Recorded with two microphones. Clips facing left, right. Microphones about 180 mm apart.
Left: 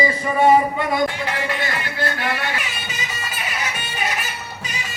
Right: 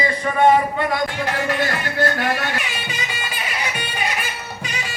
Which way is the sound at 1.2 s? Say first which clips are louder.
Right 3 dB; 45° right (ahead or behind).